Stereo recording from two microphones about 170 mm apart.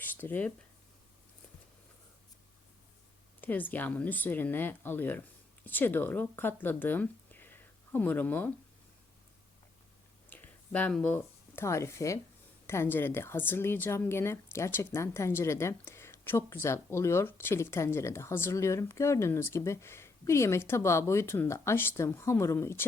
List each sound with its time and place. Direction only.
0.0 s a sound: 10° left (ahead or behind)
3.4 s a woman's voice: 10° left (ahead or behind)
10.2 s a woman's voice: 10° left (ahead or behind)